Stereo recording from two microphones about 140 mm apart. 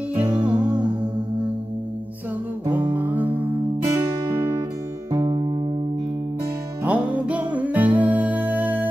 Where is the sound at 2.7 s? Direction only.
10° right (ahead or behind).